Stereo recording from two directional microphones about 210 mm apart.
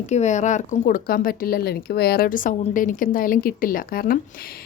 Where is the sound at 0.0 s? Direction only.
35° left (ahead or behind).